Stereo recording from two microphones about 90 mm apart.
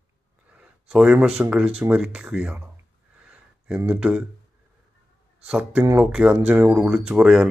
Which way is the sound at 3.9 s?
10° right (ahead or behind).